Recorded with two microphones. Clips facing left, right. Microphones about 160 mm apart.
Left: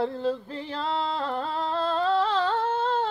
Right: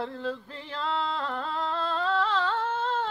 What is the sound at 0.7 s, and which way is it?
Singing, 35° left (ahead or behind).